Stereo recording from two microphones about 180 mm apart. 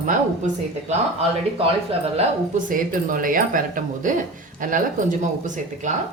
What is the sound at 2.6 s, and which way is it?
Speech, 50° right (ahead or behind).